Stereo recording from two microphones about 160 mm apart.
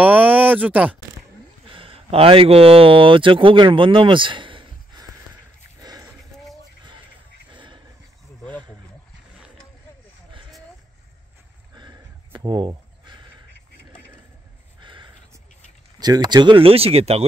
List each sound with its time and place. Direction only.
0.0 s speech: 10° right (ahead or behind)
1.7 s speech: 35° right (ahead or behind)
5.8 s dog: 25° right (ahead or behind)
7.5 s horse: 30° right (ahead or behind)
11.7 s a sound: 25° right (ahead or behind)
14.8 s a sound: 30° right (ahead or behind)
16.0 s speech: 25° right (ahead or behind)